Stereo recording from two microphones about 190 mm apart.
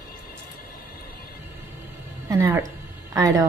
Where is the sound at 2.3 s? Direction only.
15° right (ahead or behind).